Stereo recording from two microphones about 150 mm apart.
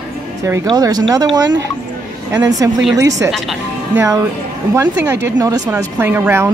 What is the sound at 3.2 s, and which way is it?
Speech, centre (ahead or behind).